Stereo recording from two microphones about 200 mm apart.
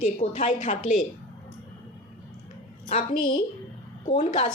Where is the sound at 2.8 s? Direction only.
45° left (ahead or behind).